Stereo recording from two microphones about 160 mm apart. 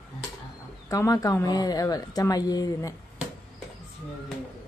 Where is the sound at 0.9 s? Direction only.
20° left (ahead or behind).